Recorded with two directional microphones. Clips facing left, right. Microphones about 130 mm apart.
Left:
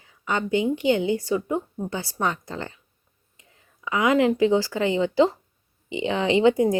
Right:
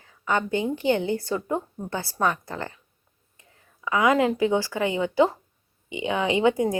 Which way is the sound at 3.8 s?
20° left (ahead or behind).